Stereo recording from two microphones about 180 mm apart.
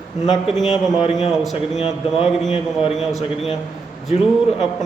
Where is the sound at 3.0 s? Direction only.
Centre (ahead or behind).